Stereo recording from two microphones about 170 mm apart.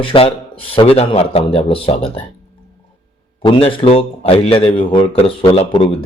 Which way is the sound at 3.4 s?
30° left (ahead or behind).